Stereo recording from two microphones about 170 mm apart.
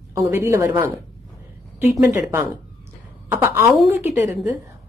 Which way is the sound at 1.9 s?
20° right (ahead or behind).